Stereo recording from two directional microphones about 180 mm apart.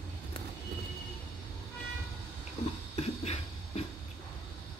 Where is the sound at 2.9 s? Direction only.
35° left (ahead or behind).